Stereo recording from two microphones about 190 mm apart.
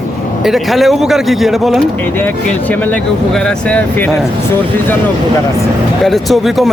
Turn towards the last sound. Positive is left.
turn(degrees=0)  # may be behind; listen again after turning